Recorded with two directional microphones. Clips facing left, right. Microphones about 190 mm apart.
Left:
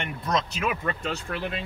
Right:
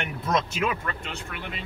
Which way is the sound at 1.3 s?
40° left (ahead or behind).